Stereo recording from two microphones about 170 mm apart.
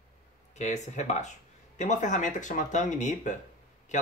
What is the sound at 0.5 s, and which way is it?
Speech, 45° left (ahead or behind).